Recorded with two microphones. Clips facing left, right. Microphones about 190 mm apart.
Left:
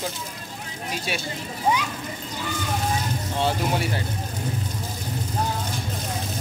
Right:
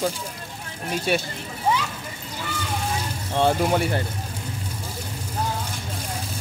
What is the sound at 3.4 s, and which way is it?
Speech, 50° right (ahead or behind).